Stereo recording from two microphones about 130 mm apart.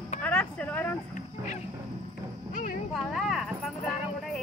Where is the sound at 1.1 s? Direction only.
65° left (ahead or behind).